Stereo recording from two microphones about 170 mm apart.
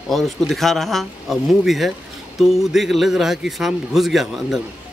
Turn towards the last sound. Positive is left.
turn(degrees=0)  # may be behind; listen again after turning